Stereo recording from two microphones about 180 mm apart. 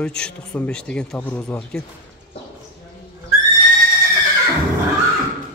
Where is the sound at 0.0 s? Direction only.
5° left (ahead or behind).